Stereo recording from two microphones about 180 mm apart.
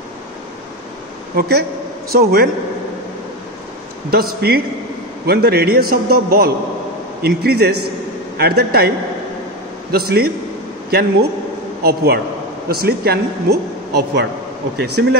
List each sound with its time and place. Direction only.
1.3 s a woman's voice: 60° right (ahead or behind)
4.1 s a woman's voice: 60° right (ahead or behind)